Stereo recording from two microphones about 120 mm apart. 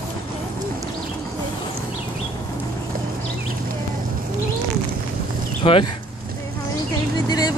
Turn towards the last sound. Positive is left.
turn(degrees=35)  # may be behind; listen again after turning